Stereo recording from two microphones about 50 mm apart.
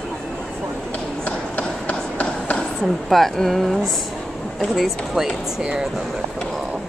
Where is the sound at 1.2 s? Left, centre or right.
Left.